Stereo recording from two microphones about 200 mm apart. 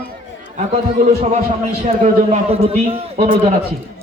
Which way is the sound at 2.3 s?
30° right (ahead or behind).